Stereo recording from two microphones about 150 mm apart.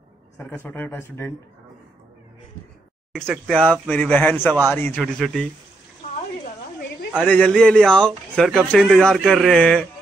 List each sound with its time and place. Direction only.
0.7 s speech: 15° left (ahead or behind)
3.2 s speech: 5° left (ahead or behind)
5.0 s speech: centre (ahead or behind)
7.2 s speech: 5° left (ahead or behind)